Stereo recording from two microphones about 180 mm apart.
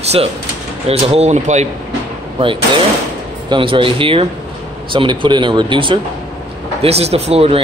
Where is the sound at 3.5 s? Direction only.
30° right (ahead or behind).